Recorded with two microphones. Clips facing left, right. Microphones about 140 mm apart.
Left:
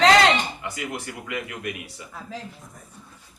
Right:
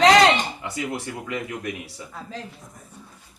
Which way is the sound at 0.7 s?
30° right (ahead or behind).